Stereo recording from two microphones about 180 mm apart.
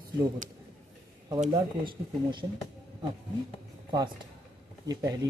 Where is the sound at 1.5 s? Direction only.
25° right (ahead or behind).